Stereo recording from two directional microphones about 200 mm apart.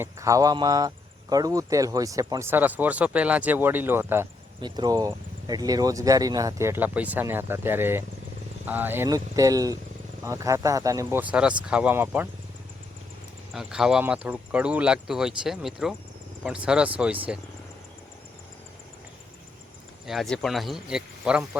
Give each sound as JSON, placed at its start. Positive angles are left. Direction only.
{"t": 0.0, "sound": "speech", "side_deg": -15}
{"t": 13.5, "sound": "speech", "side_deg": -5}
{"t": 20.1, "sound": "speech", "side_deg": 0}